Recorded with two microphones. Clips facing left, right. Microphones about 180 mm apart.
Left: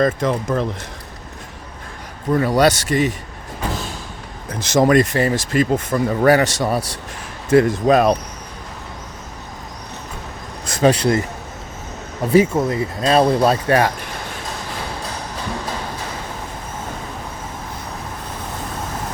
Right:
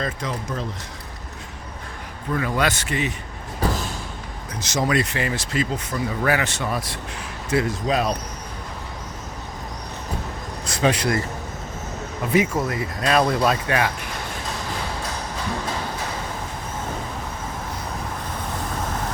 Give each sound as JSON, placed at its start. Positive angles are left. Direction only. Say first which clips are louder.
{"t": 0.0, "sound": "speech", "louder": "left 10 dB", "side_deg": 55}
{"t": 2.3, "sound": "speech", "louder": "left 8 dB", "side_deg": 35}
{"t": 4.8, "sound": "speech", "louder": "left 8 dB", "side_deg": 45}
{"t": 6.3, "sound": "speech", "louder": "left 7 dB", "side_deg": 40}
{"t": 7.5, "sound": "speech", "louder": "left 8 dB", "side_deg": 55}
{"t": 10.7, "sound": "a sound", "louder": "left 6 dB", "side_deg": 45}
{"t": 10.9, "sound": "speech", "louder": "left 5 dB", "side_deg": 30}
{"t": 12.2, "sound": "speech", "louder": "left 6 dB", "side_deg": 35}